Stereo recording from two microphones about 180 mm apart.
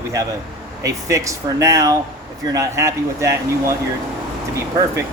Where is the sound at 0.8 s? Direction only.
15° right (ahead or behind).